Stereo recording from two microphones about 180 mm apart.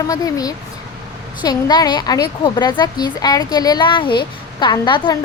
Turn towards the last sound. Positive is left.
turn(degrees=25)  # may be behind; listen again after turning